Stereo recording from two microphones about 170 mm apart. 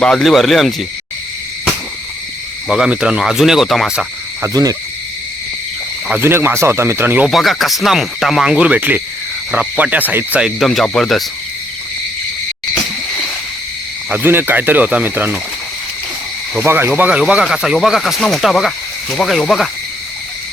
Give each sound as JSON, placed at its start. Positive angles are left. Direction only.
{"t": 0.0, "sound": "speech", "side_deg": 0}
{"t": 2.6, "sound": "speech", "side_deg": -5}
{"t": 4.4, "sound": "cricket", "side_deg": -20}
{"t": 6.1, "sound": "speech", "side_deg": -10}
{"t": 7.3, "sound": "speech", "side_deg": 0}
{"t": 14.1, "sound": "speech", "side_deg": -10}
{"t": 16.6, "sound": "speech", "side_deg": -10}